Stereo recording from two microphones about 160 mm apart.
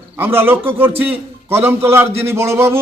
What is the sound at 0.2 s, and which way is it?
A man's voice, 15° right (ahead or behind).